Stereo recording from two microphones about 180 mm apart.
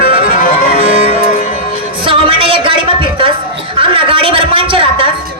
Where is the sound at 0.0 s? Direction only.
55° left (ahead or behind).